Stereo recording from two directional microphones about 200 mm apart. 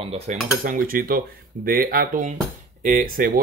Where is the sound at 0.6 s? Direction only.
45° right (ahead or behind).